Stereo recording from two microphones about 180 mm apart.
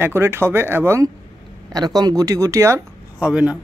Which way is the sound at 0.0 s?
15° right (ahead or behind).